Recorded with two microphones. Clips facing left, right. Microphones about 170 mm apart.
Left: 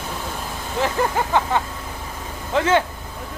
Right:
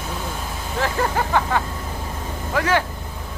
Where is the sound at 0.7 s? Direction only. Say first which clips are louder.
Left 1 dB; 20° left (ahead or behind).